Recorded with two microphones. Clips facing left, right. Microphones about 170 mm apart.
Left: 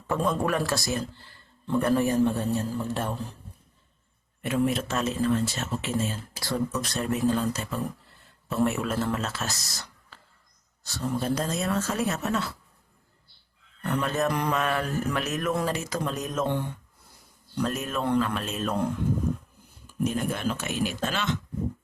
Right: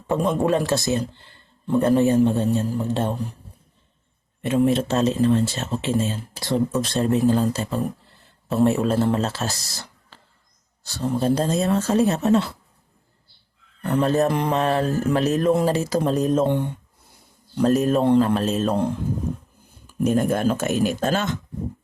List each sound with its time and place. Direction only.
0.1 s speech: 20° right (ahead or behind)
4.4 s speech: 25° right (ahead or behind)
13.8 s mantra: 30° right (ahead or behind)
16.5 s speech: 20° right (ahead or behind)
17.5 s mantra: 35° right (ahead or behind)
20.1 s speech: 45° right (ahead or behind)